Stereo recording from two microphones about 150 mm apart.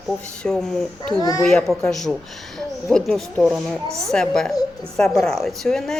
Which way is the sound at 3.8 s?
20° right (ahead or behind).